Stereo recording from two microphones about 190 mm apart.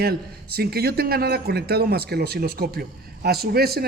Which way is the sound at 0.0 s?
55° right (ahead or behind).